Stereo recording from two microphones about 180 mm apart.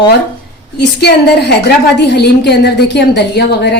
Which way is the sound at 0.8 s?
65° left (ahead or behind).